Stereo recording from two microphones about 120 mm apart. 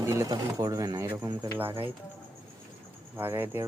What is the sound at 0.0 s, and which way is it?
Speech, 25° right (ahead or behind).